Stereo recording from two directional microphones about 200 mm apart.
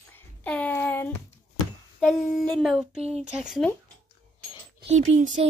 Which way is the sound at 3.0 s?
30° right (ahead or behind).